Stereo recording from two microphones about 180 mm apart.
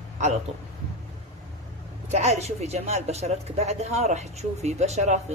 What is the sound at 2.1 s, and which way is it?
A woman's voice, 40° right (ahead or behind).